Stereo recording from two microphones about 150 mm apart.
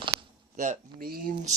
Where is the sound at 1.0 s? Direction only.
85° right.